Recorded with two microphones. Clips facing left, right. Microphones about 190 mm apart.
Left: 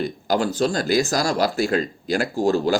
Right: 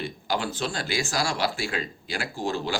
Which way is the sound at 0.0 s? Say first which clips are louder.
Left 7 dB; 40° left (ahead or behind).